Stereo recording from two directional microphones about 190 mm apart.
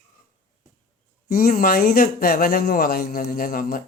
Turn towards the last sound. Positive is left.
turn(degrees=50)  # may be behind; listen again after turning